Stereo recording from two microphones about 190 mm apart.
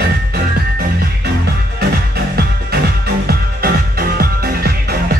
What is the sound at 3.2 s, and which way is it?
Music, 55° right (ahead or behind).